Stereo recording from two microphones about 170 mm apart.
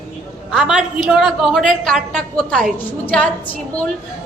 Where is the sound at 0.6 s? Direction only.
5° right (ahead or behind).